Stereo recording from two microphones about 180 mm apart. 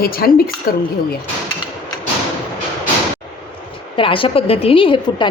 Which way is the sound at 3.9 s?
30° left (ahead or behind).